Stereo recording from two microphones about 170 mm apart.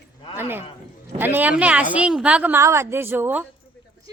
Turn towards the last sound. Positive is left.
turn(degrees=-10)  # may be behind; listen again after turning